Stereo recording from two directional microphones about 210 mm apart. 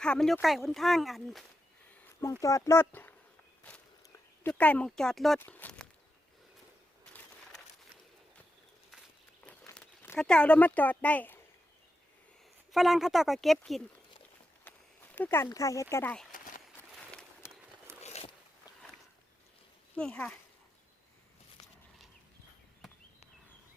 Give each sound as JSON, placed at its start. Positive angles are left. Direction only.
{"t": 0.0, "sound": "speech", "side_deg": 5}
{"t": 2.4, "sound": "speech", "side_deg": 15}
{"t": 9.5, "sound": "speech", "side_deg": 5}
{"t": 12.7, "sound": "speech", "side_deg": 0}
{"t": 15.1, "sound": "speech", "side_deg": 10}
{"t": 16.7, "sound": "a sound", "side_deg": 10}
{"t": 18.0, "sound": "boat", "side_deg": 30}
{"t": 20.0, "sound": "speech", "side_deg": 5}
{"t": 21.6, "sound": "a sound", "side_deg": 20}